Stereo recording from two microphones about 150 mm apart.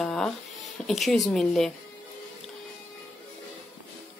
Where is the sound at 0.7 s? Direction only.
Centre (ahead or behind).